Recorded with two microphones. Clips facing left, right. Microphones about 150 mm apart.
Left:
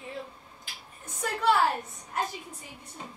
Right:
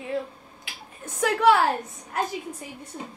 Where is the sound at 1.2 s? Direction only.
80° right.